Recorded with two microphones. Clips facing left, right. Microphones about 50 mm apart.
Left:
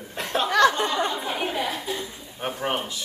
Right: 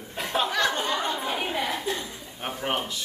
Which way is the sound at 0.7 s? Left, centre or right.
Left.